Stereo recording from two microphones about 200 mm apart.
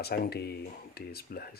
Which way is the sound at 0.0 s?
50° left (ahead or behind).